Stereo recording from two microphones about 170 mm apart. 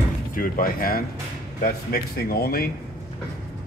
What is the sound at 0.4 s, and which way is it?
Speech, 55° left (ahead or behind).